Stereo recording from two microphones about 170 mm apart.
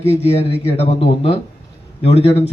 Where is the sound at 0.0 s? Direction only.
40° left (ahead or behind).